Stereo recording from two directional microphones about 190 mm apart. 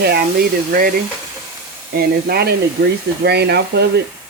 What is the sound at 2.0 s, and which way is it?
Speech, 55° right (ahead or behind).